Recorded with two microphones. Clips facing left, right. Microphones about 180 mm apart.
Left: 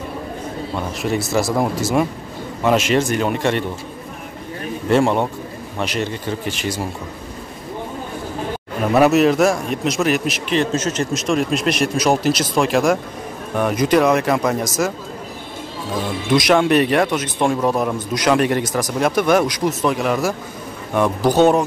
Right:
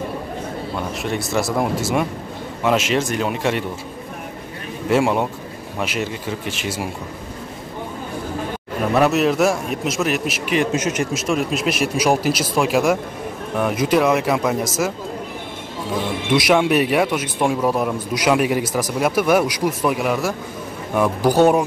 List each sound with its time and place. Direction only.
1.0 s a man's voice: centre (ahead or behind)
4.8 s a man's voice: 5° right (ahead or behind)
8.9 s a man's voice: 5° left (ahead or behind)
16.3 s speech: 5° right (ahead or behind)